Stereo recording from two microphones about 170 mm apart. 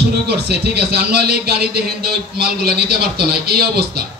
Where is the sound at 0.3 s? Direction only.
70° right (ahead or behind).